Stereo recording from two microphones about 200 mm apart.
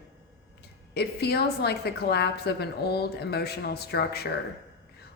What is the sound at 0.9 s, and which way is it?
A woman's voice, 55° left (ahead or behind).